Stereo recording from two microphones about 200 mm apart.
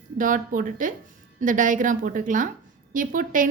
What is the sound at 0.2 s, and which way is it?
A woman's voice, 40° right (ahead or behind).